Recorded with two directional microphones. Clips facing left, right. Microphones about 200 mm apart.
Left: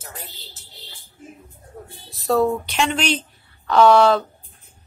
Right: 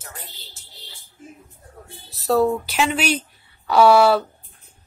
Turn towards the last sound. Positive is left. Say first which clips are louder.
# even
turn(degrees=-10)  # may be behind; listen again after turning